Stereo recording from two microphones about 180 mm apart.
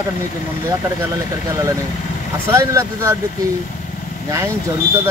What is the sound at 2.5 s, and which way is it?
Speech, 15° right (ahead or behind).